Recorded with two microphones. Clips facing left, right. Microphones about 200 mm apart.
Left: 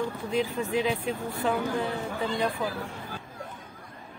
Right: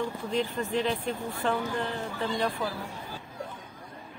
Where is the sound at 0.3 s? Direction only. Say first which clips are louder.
Left 2 dB; 5° left (ahead or behind).